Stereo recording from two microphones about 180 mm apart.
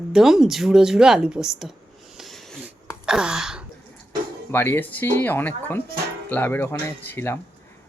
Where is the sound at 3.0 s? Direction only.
5° right (ahead or behind).